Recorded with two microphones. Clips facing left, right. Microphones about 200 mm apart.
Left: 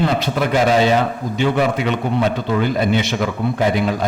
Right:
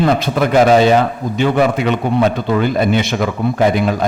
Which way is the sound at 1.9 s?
55° right (ahead or behind).